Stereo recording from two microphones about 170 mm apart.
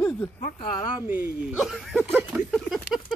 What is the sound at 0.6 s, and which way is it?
Speech, 30° left (ahead or behind).